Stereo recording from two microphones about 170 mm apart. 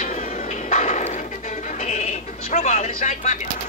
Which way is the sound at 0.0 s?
45° left (ahead or behind).